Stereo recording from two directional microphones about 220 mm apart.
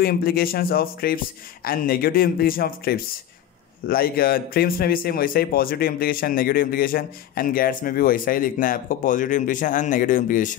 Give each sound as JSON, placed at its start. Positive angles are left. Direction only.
{"t": 0.0, "sound": "a man's voice", "side_deg": 45}